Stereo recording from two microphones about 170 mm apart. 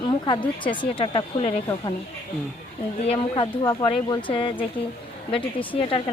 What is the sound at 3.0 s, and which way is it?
Speech, 30° left (ahead or behind).